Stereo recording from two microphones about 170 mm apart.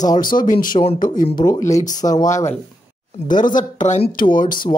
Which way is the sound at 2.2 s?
20° left (ahead or behind).